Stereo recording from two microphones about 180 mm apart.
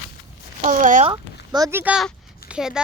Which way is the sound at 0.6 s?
45° right (ahead or behind).